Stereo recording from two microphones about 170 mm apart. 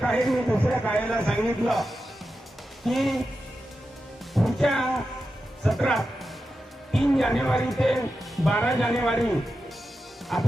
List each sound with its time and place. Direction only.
0.0 s speech: centre (ahead or behind)
4.4 s speech: centre (ahead or behind)
10.3 s speech: 5° left (ahead or behind)